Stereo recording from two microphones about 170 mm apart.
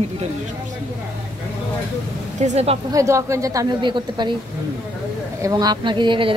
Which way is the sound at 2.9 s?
20° right (ahead or behind).